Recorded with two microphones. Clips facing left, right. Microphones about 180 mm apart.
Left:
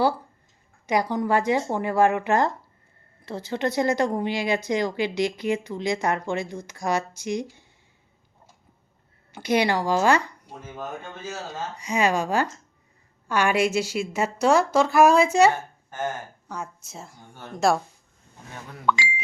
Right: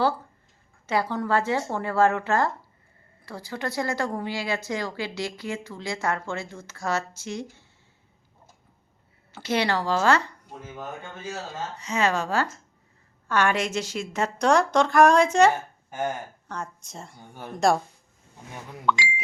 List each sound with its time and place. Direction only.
0.9 s a woman's voice: 15° left (ahead or behind)
9.3 s a woman's voice: 15° left (ahead or behind)
11.8 s a woman's voice: 15° left (ahead or behind)
15.5 s a sound: 15° right (ahead or behind)
16.5 s speech: 5° left (ahead or behind)
17.2 s speech: 15° right (ahead or behind)
17.5 s speech: centre (ahead or behind)
18.9 s speech: centre (ahead or behind)